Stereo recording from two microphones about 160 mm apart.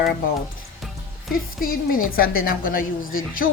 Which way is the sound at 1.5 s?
65° left (ahead or behind).